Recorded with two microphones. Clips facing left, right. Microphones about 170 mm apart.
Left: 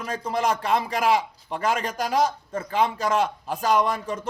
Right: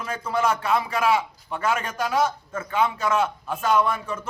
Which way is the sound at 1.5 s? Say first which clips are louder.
Even; 35° left (ahead or behind).